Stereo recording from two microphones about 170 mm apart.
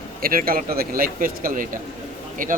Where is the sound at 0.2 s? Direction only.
60° right (ahead or behind).